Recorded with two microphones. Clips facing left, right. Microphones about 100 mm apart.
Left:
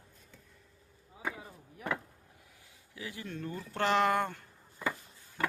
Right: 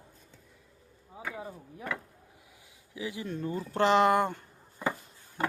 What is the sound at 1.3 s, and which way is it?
Chop, 30° right (ahead or behind).